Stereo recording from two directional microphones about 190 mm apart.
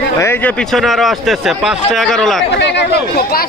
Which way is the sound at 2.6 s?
65° left (ahead or behind).